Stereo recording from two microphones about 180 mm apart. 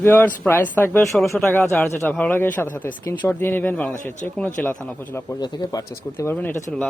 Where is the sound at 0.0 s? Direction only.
10° left (ahead or behind).